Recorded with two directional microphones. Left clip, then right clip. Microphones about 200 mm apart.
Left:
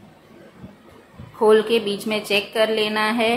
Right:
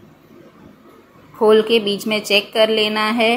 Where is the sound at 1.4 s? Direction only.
20° right (ahead or behind).